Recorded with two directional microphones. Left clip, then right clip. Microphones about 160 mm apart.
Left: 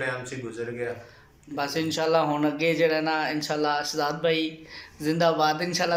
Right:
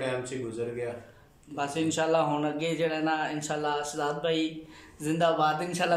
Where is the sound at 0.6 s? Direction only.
20° right (ahead or behind).